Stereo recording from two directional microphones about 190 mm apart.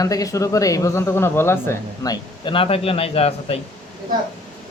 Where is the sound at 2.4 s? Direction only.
25° left (ahead or behind).